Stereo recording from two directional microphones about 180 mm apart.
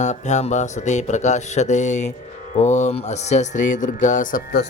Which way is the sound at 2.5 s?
40° left (ahead or behind).